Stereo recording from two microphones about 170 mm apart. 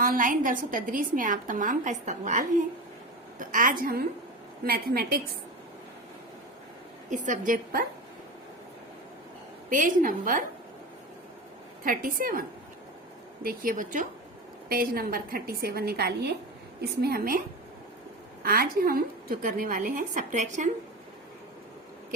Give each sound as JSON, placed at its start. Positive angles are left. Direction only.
{"t": 0.0, "sound": "a woman's voice", "side_deg": -55}
{"t": 7.1, "sound": "a woman's voice", "side_deg": -50}
{"t": 9.6, "sound": "a woman's voice", "side_deg": -50}
{"t": 11.8, "sound": "a woman's voice", "side_deg": -55}
{"t": 18.4, "sound": "a woman's voice", "side_deg": -60}